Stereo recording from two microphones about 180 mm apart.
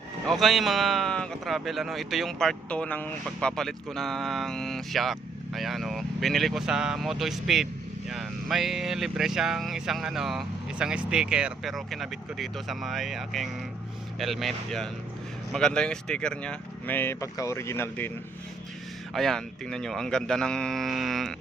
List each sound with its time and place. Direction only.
0.3 s speech: centre (ahead or behind)
19.1 s speech: centre (ahead or behind)